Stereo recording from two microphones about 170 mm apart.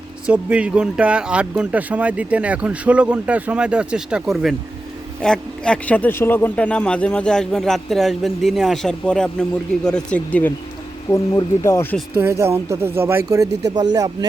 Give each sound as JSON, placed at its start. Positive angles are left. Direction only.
{"t": 0.3, "sound": "a man's voice", "side_deg": -5}
{"t": 12.1, "sound": "speech", "side_deg": -15}